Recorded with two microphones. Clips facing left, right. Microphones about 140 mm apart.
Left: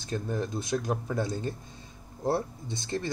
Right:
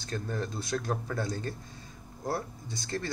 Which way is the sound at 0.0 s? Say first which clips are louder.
Left 3 dB; 15° left (ahead or behind).